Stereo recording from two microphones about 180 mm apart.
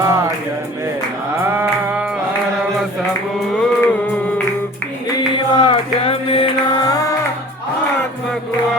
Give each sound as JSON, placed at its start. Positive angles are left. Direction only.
{"t": 0.0, "sound": "music", "side_deg": -15}
{"t": 1.5, "sound": "a sound", "side_deg": -10}
{"t": 3.6, "sound": "music", "side_deg": 10}
{"t": 5.1, "sound": "mantra", "side_deg": 30}